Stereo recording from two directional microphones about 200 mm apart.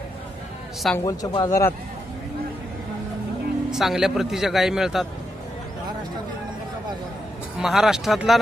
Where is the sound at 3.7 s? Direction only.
Centre (ahead or behind).